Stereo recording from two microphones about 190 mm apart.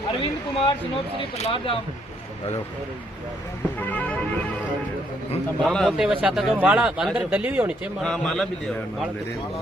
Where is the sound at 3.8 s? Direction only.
10° left (ahead or behind).